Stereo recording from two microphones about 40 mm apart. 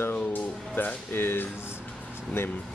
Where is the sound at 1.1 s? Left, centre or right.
Left.